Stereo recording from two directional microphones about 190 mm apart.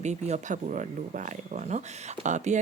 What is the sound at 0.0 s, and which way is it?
Speech, 35° right (ahead or behind).